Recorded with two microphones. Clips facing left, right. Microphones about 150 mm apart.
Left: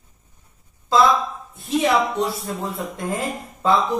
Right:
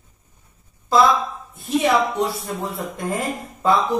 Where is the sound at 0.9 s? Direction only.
Centre (ahead or behind).